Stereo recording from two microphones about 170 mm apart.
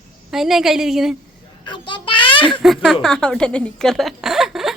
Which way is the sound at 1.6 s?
25° left (ahead or behind).